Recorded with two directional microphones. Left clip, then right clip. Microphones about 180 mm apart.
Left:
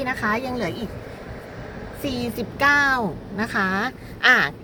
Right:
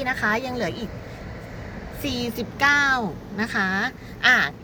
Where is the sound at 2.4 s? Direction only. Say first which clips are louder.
Left 1 dB; 55° left (ahead or behind).